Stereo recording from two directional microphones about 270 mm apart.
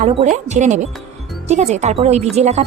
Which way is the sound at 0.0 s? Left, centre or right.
Right.